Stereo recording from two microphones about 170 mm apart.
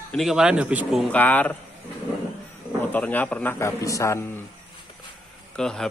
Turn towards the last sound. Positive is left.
turn(degrees=5)  # may be behind; listen again after turning